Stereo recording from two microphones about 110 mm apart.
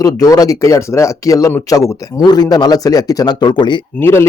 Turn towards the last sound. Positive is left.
turn(degrees=25)  # may be behind; listen again after turning